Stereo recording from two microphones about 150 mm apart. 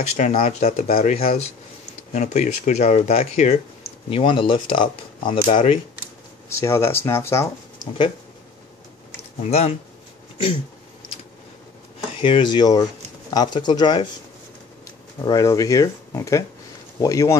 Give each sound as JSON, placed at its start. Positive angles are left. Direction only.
{"t": 0.1, "sound": "speech", "side_deg": 45}
{"t": 4.1, "sound": "speech", "side_deg": 35}
{"t": 6.5, "sound": "speech", "side_deg": 15}
{"t": 9.4, "sound": "speech", "side_deg": 45}
{"t": 10.3, "sound": "speech", "side_deg": 35}
{"t": 12.2, "sound": "speech", "side_deg": 35}
{"t": 15.2, "sound": "speech", "side_deg": 25}